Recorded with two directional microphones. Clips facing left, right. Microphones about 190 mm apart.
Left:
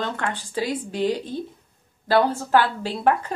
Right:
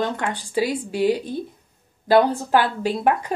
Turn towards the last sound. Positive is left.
turn(degrees=-15)  # may be behind; listen again after turning